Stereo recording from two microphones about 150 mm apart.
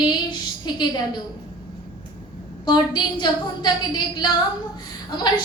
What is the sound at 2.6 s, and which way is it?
A woman's voice, 30° left (ahead or behind).